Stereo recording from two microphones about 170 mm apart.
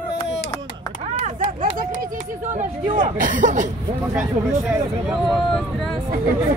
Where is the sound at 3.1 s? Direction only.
50° right (ahead or behind).